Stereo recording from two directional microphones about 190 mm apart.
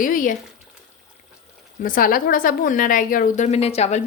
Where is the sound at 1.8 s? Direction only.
45° left (ahead or behind).